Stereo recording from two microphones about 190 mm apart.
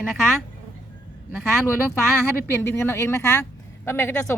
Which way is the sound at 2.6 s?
10° left (ahead or behind).